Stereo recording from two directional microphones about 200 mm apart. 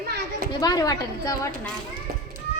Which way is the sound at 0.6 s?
20° left (ahead or behind).